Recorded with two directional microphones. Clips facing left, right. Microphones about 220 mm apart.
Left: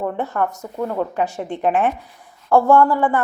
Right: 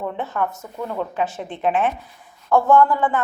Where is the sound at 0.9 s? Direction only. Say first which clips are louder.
Even; 15° left (ahead or behind).